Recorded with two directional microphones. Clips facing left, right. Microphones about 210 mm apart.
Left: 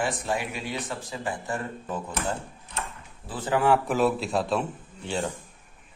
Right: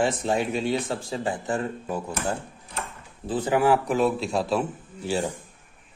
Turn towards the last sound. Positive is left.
turn(degrees=0)  # may be behind; listen again after turning